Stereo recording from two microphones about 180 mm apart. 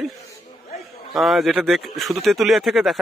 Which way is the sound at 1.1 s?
Centre (ahead or behind).